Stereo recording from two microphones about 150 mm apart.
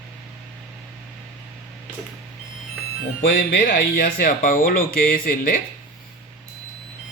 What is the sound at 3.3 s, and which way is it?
Speech, 90° left.